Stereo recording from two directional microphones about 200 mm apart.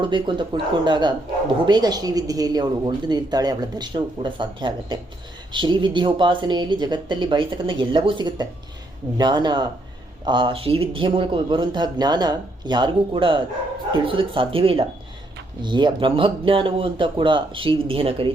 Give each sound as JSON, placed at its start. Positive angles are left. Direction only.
{"t": 0.0, "sound": "speech", "side_deg": -25}